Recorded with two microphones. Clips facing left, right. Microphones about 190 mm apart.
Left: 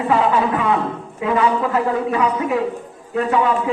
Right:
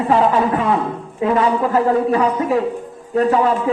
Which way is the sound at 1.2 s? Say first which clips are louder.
Right 2 dB; 35° right (ahead or behind).